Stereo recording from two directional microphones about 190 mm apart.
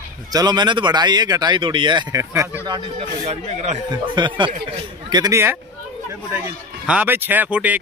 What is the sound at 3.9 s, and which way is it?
Speech, 25° right (ahead or behind).